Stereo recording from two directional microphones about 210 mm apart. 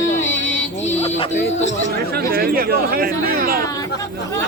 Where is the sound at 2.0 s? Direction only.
45° right (ahead or behind).